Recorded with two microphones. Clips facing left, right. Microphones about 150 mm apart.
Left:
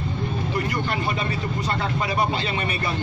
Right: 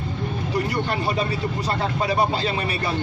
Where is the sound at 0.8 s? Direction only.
35° right (ahead or behind).